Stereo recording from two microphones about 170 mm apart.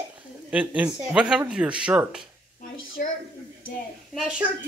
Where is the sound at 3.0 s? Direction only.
60° left (ahead or behind).